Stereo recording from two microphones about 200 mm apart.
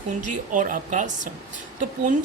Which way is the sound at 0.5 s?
40° right (ahead or behind).